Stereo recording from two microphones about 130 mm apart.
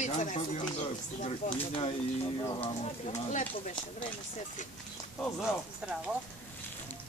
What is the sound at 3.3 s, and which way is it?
Speech, 70° left (ahead or behind).